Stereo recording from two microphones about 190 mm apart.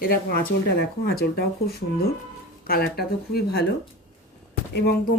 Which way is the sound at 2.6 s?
50° left (ahead or behind).